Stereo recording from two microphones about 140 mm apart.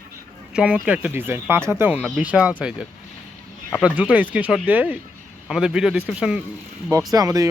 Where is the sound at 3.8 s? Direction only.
10° right (ahead or behind).